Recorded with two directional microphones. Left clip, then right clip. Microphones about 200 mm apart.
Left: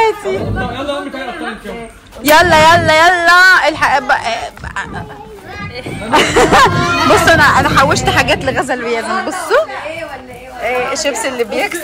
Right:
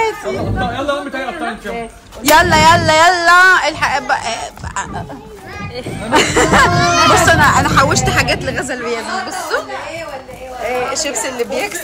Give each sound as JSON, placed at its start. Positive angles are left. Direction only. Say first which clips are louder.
{"t": 0.0, "sound": "speech", "louder": "left 4 dB", "side_deg": 0}
{"t": 2.2, "sound": "a woman's voice", "louder": "left 2 dB", "side_deg": -5}
{"t": 6.1, "sound": "speech", "louder": "left 2 dB", "side_deg": 0}
{"t": 10.6, "sound": "speech", "louder": "left 3 dB", "side_deg": 0}